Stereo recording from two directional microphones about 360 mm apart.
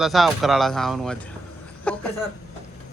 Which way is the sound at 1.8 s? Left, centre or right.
Centre.